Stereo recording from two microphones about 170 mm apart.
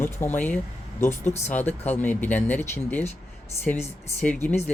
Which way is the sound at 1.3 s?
40° left (ahead or behind).